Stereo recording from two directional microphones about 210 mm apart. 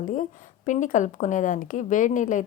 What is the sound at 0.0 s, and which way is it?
A woman's voice, 40° left (ahead or behind).